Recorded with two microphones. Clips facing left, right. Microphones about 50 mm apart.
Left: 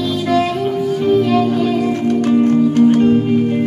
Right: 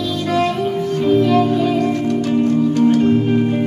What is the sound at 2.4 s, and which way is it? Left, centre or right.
Music, left.